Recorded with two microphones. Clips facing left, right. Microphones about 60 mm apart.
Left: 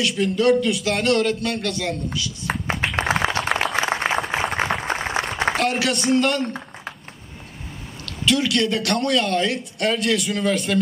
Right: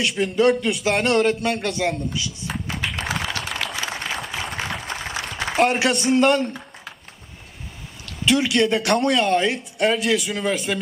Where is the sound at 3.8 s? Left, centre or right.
Left.